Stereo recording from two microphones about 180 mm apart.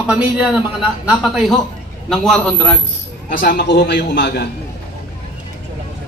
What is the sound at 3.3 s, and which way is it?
A man's voice, 55° left (ahead or behind).